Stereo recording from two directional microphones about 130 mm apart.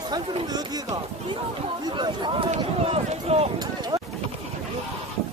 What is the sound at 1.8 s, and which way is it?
Speech, 35° right (ahead or behind).